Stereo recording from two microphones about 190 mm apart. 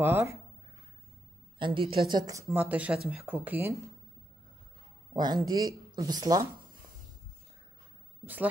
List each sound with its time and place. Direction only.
0.0 s speech: 15° right (ahead or behind)
1.6 s speech: 25° right (ahead or behind); by 3.7 s 10° right (ahead or behind)
5.1 s speech: 20° right (ahead or behind)